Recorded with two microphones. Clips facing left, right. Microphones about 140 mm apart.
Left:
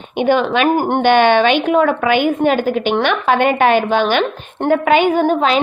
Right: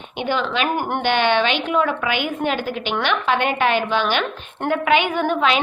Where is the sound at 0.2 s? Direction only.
50° left (ahead or behind).